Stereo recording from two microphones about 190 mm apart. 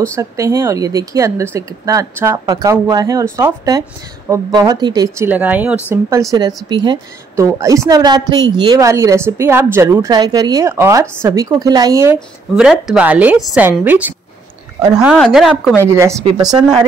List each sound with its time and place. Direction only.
0.0 s a woman's voice: 15° right (ahead or behind)
15.1 s speech: centre (ahead or behind)
15.8 s a woman's voice: 15° right (ahead or behind)